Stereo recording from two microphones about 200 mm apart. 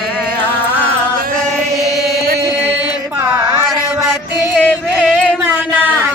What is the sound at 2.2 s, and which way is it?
Chant, 50° right (ahead or behind).